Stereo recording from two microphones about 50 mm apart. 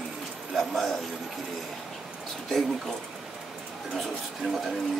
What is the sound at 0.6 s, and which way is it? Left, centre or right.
Speech, centre.